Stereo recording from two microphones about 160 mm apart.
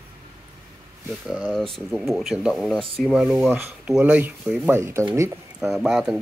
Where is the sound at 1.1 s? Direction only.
5° right (ahead or behind).